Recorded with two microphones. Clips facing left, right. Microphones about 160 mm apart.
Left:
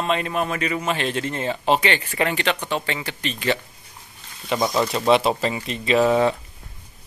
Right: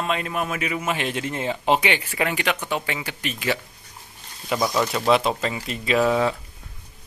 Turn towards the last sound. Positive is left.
turn(degrees=0)  # may be behind; listen again after turning